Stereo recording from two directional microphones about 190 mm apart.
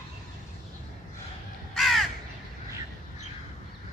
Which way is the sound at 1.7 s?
Centre (ahead or behind).